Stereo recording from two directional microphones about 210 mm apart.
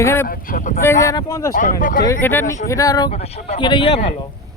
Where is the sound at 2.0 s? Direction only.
10° left (ahead or behind).